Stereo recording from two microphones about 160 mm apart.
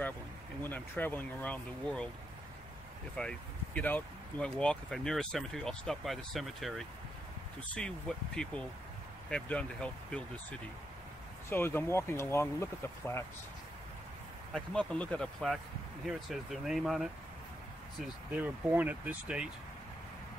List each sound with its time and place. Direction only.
0.7 s speech: 10° left (ahead or behind)
3.2 s speech: 5° left (ahead or behind)
11.5 s speech: 15° left (ahead or behind)
14.5 s speech: 5° left (ahead or behind)
18.4 s speech: 10° right (ahead or behind)